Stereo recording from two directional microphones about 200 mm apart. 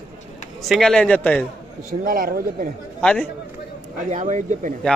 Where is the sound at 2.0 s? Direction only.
45° right (ahead or behind).